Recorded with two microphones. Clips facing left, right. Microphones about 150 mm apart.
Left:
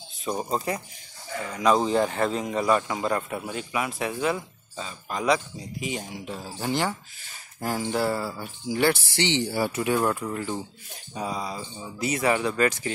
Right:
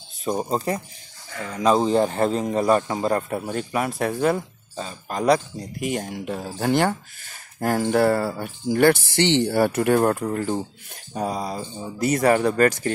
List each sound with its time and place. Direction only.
0.3 s a man's voice: 30° right (ahead or behind)
1.5 s a man's voice: 25° right (ahead or behind)
5.8 s speech: 55° right (ahead or behind)